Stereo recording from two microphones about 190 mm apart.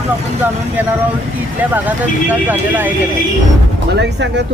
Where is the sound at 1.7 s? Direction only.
10° right (ahead or behind).